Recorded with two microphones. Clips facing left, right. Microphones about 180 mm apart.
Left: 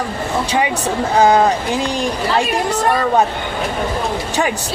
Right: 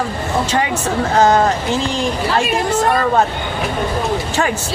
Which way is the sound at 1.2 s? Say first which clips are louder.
Left 1 dB; 15° left (ahead or behind).